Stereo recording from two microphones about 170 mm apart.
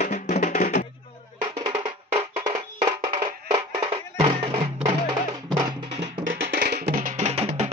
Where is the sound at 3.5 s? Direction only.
35° right (ahead or behind).